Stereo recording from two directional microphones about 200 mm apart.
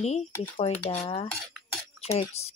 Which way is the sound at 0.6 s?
25° left (ahead or behind).